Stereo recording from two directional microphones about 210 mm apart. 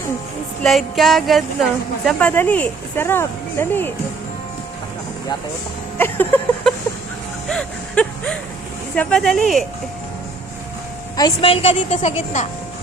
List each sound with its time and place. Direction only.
0.6 s music: centre (ahead or behind)
2.0 s speech: 5° left (ahead or behind)
6.0 s a sound: 10° left (ahead or behind)
9.0 s music: 5° left (ahead or behind)
11.2 s a woman's voice: 25° left (ahead or behind)